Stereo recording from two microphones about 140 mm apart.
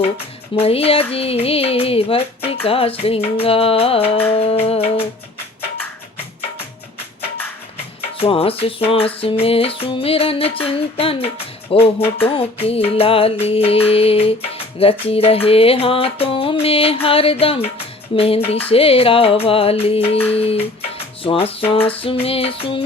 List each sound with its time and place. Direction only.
0.5 s music: 45° left (ahead or behind)
8.2 s music: 45° left (ahead or behind)
18.7 s music: 45° left (ahead or behind)